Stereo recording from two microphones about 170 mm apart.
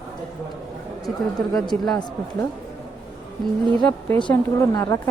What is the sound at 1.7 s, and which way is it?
Speech, 5° left (ahead or behind).